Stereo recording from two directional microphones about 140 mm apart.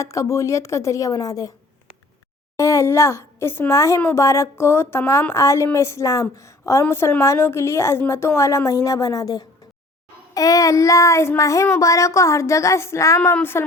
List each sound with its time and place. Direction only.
0.0 s a woman's voice: 20° left (ahead or behind)
2.6 s a woman's voice: 20° left (ahead or behind)